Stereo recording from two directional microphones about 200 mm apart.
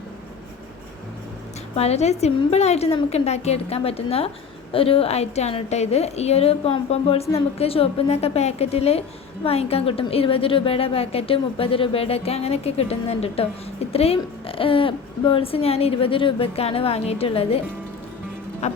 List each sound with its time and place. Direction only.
1.7 s a woman's voice: 30° left (ahead or behind)
18.6 s a woman's voice: 35° left (ahead or behind)